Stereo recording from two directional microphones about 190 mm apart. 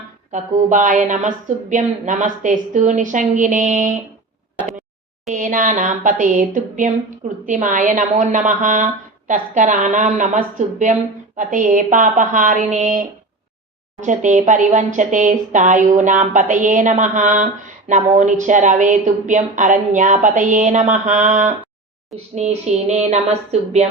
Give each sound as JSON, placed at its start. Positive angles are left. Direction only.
{"t": 0.3, "sound": "speech", "side_deg": -40}
{"t": 5.3, "sound": "a woman's voice", "side_deg": -45}